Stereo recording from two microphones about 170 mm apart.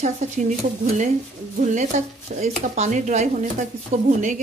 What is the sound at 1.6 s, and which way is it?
Speech, 45° right (ahead or behind).